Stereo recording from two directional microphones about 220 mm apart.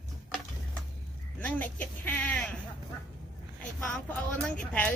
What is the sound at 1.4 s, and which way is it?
Speech, 10° left (ahead or behind).